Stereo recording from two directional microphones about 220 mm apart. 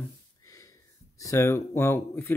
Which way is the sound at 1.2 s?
15° left (ahead or behind).